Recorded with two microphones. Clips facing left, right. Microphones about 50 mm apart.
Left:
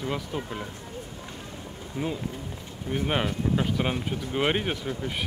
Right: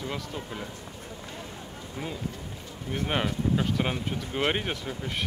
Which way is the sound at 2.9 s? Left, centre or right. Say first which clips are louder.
Left 2 dB; centre.